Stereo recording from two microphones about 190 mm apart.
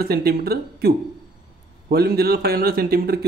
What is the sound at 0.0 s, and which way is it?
A man's voice, 55° right (ahead or behind).